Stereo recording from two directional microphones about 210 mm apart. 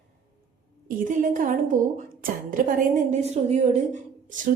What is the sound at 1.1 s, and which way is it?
A woman's voice, 40° right (ahead or behind).